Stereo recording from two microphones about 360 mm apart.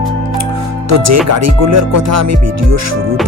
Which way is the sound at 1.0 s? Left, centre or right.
Right.